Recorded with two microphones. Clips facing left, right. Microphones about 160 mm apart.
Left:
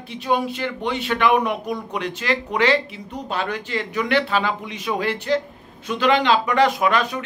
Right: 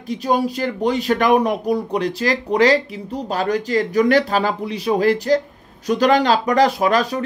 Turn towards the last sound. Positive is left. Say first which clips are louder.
# right 3 dB
turn(degrees=-35)  # may be behind; listen again after turning